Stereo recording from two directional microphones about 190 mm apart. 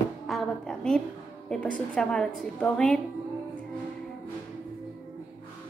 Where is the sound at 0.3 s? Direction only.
5° left (ahead or behind).